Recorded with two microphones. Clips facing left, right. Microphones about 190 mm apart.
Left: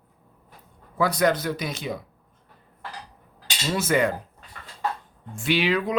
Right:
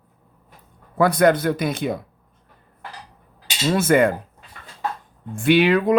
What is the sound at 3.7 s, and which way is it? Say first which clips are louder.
Speech: right 6 dB; 55° right (ahead or behind).